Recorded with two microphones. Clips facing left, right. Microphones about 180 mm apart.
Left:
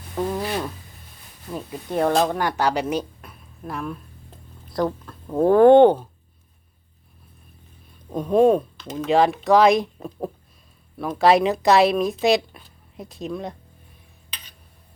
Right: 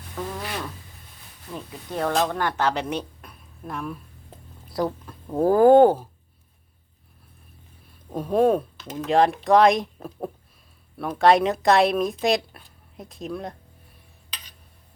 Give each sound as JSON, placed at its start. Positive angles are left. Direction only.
{"t": 0.2, "sound": "a sound", "side_deg": 30}
{"t": 1.5, "sound": "speech", "side_deg": 20}
{"t": 8.1, "sound": "speech", "side_deg": -5}